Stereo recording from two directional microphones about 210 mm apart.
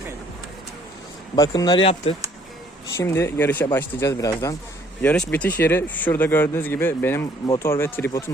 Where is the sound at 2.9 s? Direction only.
10° left (ahead or behind).